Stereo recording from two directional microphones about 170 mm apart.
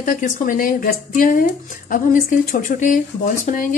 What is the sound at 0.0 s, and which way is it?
Speech, 50° left (ahead or behind).